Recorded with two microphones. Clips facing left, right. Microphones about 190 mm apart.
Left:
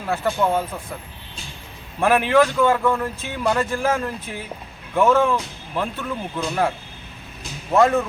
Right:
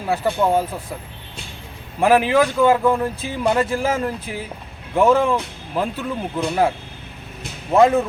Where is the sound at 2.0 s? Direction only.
10° right (ahead or behind).